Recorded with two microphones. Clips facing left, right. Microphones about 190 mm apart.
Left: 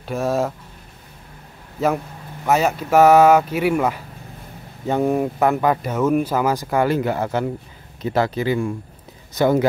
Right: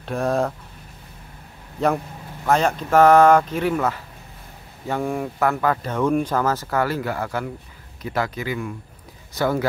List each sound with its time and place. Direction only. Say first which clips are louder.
0.0 s speech: left 1 dB; centre (ahead or behind)
1.8 s speech: left 1 dB; 5° left (ahead or behind); by 9.7 s 20° left (ahead or behind)